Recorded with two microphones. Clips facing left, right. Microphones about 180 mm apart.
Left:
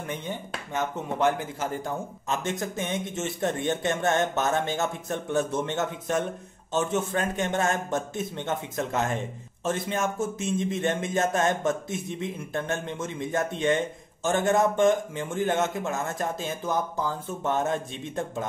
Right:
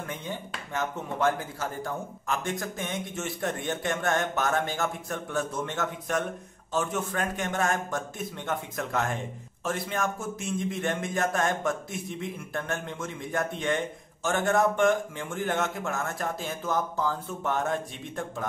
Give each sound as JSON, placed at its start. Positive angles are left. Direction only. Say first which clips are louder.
{"t": 0.3, "sound": "a man's voice", "louder": "left 2 dB", "side_deg": 20}